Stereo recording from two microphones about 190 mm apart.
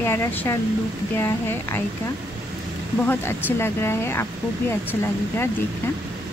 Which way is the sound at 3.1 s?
10° left (ahead or behind).